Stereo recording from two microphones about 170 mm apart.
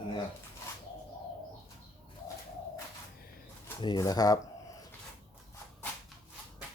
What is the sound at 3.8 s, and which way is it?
Speech, 25° left (ahead or behind).